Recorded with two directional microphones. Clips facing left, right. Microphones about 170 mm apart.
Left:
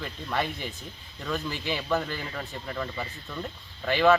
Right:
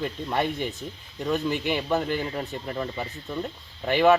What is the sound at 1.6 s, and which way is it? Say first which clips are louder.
Speech: right 3 dB; 20° right (ahead or behind).